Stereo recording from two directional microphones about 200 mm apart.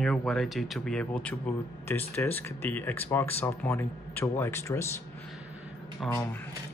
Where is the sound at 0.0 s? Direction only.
Centre (ahead or behind).